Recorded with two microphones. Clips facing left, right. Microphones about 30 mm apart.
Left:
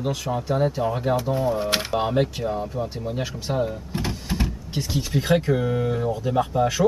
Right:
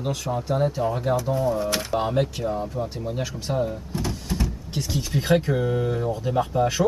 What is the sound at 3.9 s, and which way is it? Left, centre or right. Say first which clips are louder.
Vehicle: left 1 dB; left.